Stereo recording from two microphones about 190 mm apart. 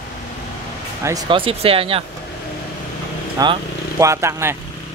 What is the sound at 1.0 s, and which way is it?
Speech, 25° right (ahead or behind).